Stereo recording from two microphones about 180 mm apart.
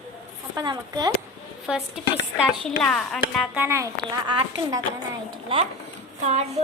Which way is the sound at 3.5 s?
15° right (ahead or behind).